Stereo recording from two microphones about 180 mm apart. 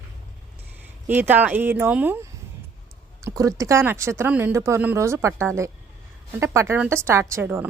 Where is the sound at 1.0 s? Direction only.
10° right (ahead or behind).